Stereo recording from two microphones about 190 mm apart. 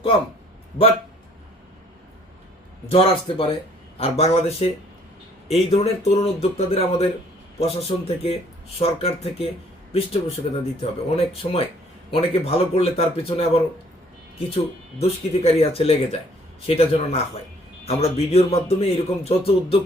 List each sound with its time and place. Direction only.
2.9 s a man's voice: 30° left (ahead or behind)